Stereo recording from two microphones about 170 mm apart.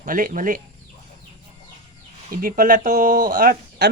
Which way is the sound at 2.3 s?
55° right (ahead or behind).